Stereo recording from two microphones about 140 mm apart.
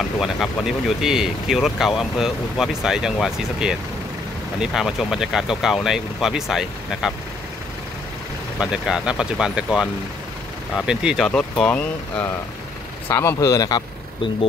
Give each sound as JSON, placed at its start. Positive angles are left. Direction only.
{"t": 0.2, "sound": "speech", "side_deg": 0}
{"t": 8.5, "sound": "speech", "side_deg": -5}
{"t": 11.2, "sound": "speech", "side_deg": 5}
{"t": 13.1, "sound": "speech", "side_deg": 20}